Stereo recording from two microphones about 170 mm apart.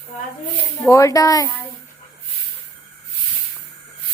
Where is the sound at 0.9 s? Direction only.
20° left (ahead or behind).